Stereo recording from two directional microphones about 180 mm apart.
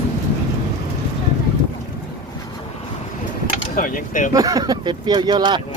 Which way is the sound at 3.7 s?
50° left (ahead or behind).